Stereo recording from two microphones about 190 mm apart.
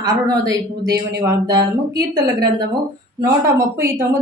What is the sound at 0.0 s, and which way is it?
Speech, 20° right (ahead or behind).